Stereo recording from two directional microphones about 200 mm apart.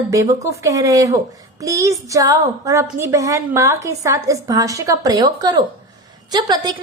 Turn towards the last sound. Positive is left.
turn(degrees=-20)  # may be behind; listen again after turning